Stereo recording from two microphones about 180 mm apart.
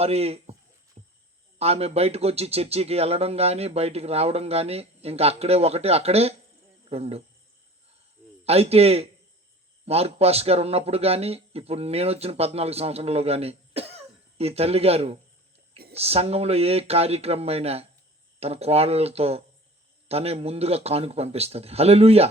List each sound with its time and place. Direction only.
0.0 s speech: 35° right (ahead or behind)
1.0 s a sound: 35° right (ahead or behind)
1.5 s speech: 35° right (ahead or behind)
8.4 s speech: 35° right (ahead or behind)